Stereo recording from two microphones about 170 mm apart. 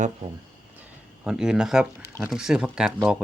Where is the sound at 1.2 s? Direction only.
5° right (ahead or behind).